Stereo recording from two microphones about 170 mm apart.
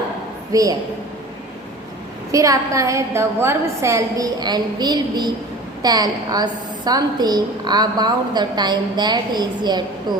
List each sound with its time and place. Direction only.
0.5 s a woman's voice: 20° right (ahead or behind)
2.3 s a woman's voice: 20° right (ahead or behind)